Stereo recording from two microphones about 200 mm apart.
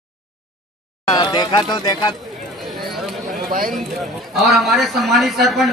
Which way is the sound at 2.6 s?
Centre (ahead or behind).